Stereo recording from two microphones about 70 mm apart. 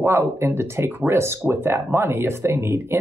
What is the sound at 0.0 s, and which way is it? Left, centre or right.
Speech, right.